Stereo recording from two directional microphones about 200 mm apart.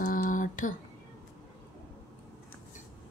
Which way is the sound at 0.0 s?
40° left (ahead or behind).